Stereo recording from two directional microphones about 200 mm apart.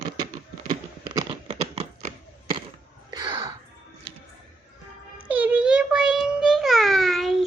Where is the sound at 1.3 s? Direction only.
25° right (ahead or behind).